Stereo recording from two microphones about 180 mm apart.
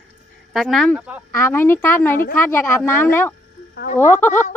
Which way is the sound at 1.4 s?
15° left (ahead or behind).